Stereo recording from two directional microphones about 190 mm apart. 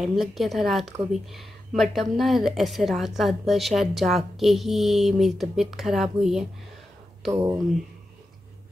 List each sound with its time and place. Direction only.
0.0 s a woman's voice: centre (ahead or behind)
7.3 s speech: 15° right (ahead or behind)